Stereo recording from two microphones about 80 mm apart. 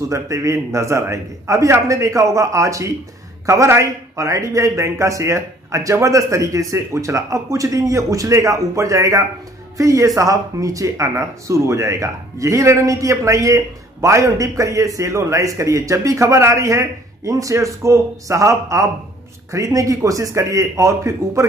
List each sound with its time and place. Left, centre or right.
0.1 s speech: right